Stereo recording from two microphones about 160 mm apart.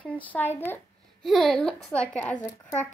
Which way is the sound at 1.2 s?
Centre (ahead or behind).